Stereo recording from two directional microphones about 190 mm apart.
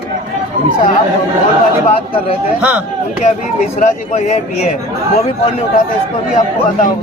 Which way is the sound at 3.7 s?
35° left (ahead or behind).